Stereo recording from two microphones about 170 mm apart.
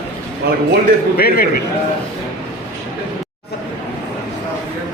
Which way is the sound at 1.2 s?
60° left (ahead or behind).